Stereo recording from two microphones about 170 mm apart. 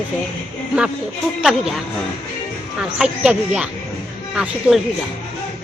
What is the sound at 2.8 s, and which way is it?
Speech, 5° right (ahead or behind).